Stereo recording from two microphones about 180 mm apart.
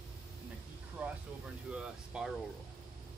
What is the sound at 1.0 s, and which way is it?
Speech, 5° right (ahead or behind).